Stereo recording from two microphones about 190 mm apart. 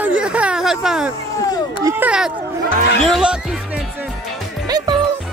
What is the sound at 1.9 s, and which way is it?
Speech, 10° right (ahead or behind).